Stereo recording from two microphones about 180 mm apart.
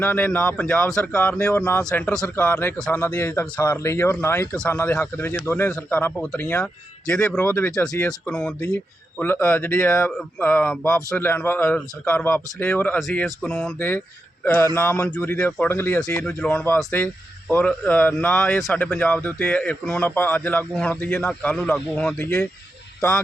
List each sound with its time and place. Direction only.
0.0 s speech: 10° left (ahead or behind)